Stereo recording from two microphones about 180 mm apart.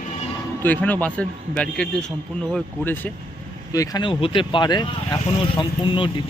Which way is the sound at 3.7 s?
20° left (ahead or behind).